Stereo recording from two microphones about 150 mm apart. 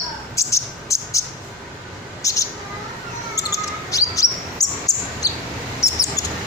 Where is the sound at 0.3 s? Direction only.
20° left (ahead or behind).